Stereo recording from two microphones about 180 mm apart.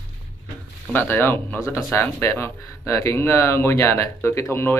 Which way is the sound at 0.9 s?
10° left (ahead or behind).